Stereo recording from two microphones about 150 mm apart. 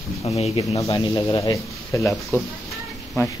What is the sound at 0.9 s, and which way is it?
Speech, 35° left (ahead or behind).